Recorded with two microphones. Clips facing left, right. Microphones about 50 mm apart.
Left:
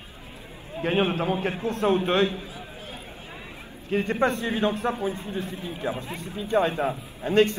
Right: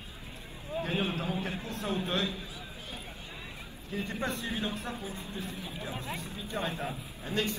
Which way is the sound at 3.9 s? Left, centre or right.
Left.